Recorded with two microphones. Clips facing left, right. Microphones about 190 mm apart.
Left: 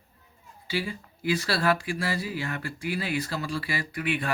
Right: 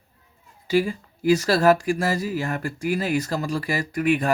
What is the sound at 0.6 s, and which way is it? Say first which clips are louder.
Speech: right 10 dB; 45° right (ahead or behind).